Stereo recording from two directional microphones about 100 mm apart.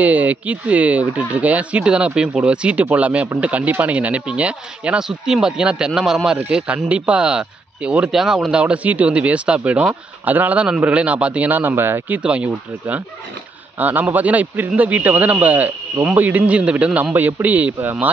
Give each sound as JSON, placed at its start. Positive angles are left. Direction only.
{"t": 0.0, "sound": "speech", "side_deg": -15}